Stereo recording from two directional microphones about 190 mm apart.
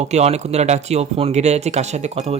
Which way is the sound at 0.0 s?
35° right (ahead or behind).